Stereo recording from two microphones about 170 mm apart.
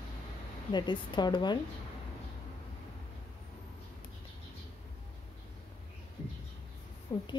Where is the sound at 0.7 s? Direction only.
25° left (ahead or behind).